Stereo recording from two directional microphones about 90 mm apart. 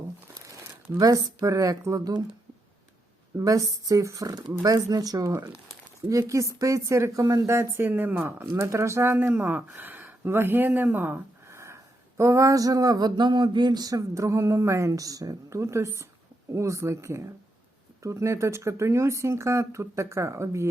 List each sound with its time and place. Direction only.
0.4 s crumpling: 35° right (ahead or behind)
1.5 s speech: 40° right (ahead or behind)
3.4 s speech: 40° right (ahead or behind)
9.1 s speech: 20° right (ahead or behind)